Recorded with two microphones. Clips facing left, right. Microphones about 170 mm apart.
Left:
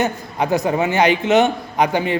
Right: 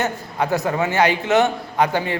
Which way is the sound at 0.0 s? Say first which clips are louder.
Left 2 dB; 15° left (ahead or behind).